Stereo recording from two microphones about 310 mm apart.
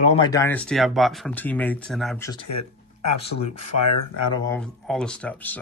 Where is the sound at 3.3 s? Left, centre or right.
Left.